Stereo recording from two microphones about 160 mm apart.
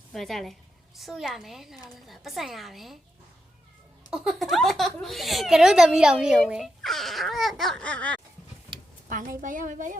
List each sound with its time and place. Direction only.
0.1 s a woman's voice: centre (ahead or behind)
4.1 s speech: centre (ahead or behind)
9.0 s a woman's voice: 55° right (ahead or behind)